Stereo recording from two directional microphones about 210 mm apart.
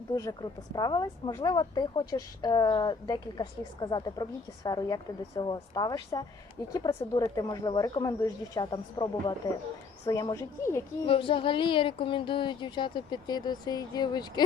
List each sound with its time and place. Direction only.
0.1 s a woman's voice: 15° left (ahead or behind)
11.0 s a woman's voice: 25° left (ahead or behind)